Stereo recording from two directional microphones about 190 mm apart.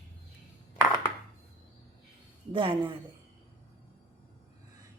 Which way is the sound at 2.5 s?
25° right (ahead or behind).